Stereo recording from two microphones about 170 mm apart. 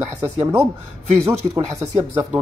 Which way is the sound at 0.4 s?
15° right (ahead or behind).